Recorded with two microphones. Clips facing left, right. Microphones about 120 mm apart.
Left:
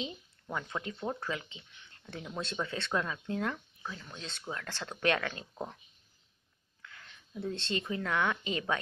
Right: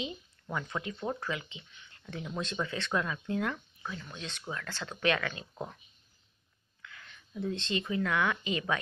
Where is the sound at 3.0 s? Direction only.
25° left (ahead or behind).